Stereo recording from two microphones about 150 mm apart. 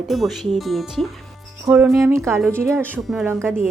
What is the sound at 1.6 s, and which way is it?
Speech, 15° right (ahead or behind).